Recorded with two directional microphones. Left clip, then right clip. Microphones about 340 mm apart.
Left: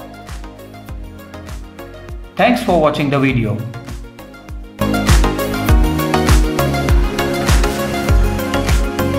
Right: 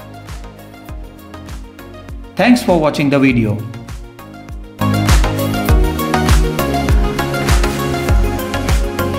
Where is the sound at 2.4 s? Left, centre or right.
Right.